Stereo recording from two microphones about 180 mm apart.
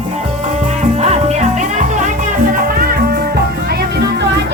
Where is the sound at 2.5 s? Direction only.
50° right (ahead or behind).